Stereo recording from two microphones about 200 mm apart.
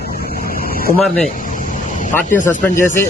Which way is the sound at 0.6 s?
45° left (ahead or behind).